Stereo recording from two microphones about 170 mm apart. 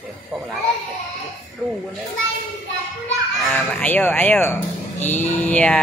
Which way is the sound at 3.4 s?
10° left (ahead or behind).